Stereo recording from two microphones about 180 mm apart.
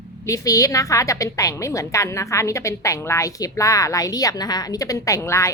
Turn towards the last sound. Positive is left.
turn(degrees=15)  # may be behind; listen again after turning